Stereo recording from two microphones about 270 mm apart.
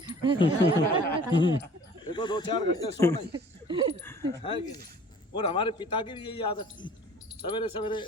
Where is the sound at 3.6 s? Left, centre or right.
Centre.